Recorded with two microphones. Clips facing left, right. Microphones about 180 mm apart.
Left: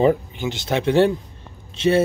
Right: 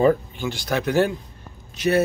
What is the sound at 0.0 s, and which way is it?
Speech, 20° left (ahead or behind).